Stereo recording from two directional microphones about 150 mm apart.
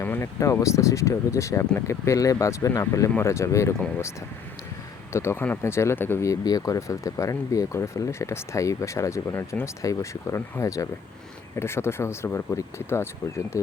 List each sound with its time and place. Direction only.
0.0 s speech: 15° left (ahead or behind)
5.1 s speech: 15° left (ahead or behind)